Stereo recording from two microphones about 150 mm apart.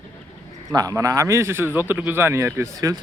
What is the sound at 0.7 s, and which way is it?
A man's voice, 25° right (ahead or behind).